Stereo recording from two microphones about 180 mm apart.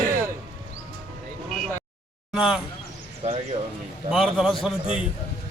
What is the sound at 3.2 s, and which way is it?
Speech, 35° right (ahead or behind).